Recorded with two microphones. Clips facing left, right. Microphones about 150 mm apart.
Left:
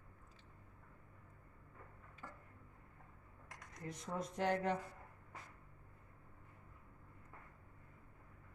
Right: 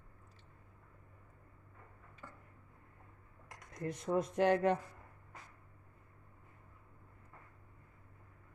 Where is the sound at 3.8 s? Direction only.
65° right (ahead or behind).